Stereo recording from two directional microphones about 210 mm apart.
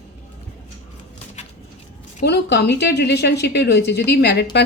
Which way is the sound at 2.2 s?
55° left (ahead or behind).